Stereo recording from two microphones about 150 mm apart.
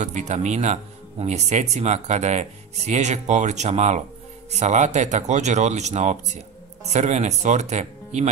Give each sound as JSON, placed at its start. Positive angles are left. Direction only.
{"t": 0.0, "sound": "speech", "side_deg": -50}